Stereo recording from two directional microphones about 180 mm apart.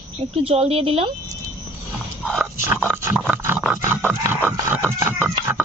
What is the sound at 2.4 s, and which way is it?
Dog, 10° right (ahead or behind).